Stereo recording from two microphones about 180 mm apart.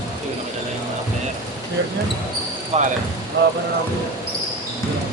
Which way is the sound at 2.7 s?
35° right (ahead or behind).